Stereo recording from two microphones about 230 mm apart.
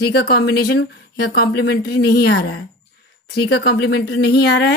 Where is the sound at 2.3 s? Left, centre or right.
Left.